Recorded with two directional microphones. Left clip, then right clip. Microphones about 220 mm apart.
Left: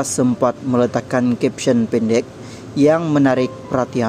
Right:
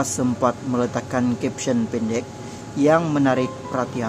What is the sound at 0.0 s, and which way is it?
Speech, 25° left (ahead or behind).